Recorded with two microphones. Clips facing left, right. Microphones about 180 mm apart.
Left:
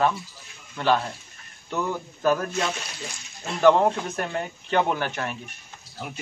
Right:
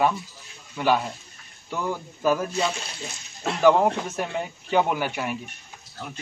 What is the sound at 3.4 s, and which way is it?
Speech, 75° right (ahead or behind).